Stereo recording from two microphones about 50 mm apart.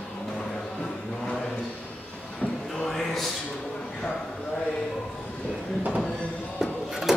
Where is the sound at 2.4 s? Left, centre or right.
Left.